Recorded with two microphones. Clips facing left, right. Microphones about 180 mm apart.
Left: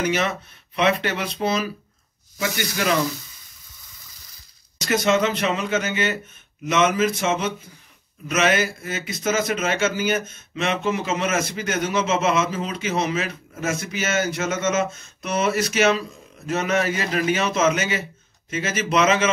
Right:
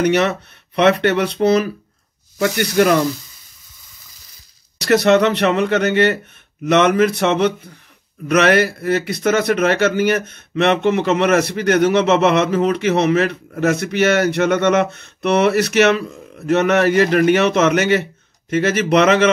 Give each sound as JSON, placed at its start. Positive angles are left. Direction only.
{"t": 0.0, "sound": "a man's voice", "side_deg": -65}
{"t": 4.7, "sound": "a man's voice", "side_deg": -65}